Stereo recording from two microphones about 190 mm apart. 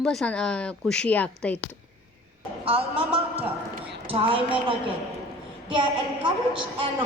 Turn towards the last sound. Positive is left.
turn(degrees=-25)  # may be behind; listen again after turning